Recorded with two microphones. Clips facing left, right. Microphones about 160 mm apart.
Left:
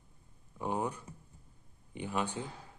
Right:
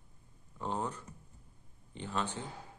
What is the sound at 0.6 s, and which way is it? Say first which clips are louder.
A man's voice: left 2 dB; 10° left (ahead or behind).